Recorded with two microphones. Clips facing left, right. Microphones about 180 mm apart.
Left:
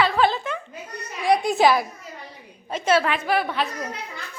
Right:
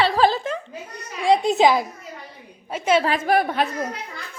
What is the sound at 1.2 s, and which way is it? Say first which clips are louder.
A child's voice: right 2 dB; 25° right (ahead or behind).